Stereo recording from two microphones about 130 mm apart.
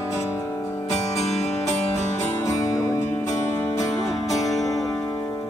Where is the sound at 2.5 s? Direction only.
25° left (ahead or behind).